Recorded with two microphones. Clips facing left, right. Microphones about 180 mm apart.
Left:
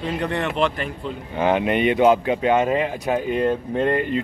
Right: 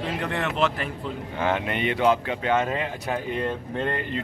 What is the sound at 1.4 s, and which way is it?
Speech, 20° left (ahead or behind).